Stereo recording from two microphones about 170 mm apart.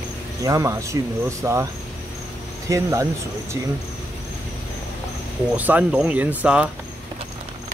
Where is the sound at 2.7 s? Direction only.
20° right (ahead or behind).